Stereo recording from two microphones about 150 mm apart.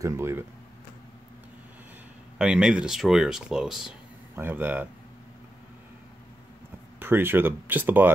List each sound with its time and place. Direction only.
0.0 s speech: 15° right (ahead or behind)
2.3 s speech: 5° right (ahead or behind)
7.0 s speech: 15° right (ahead or behind)